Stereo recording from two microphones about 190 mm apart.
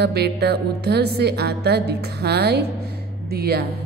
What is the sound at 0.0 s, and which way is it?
Speech, 60° right (ahead or behind).